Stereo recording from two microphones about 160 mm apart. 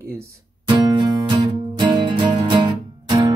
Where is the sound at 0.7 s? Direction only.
30° right (ahead or behind).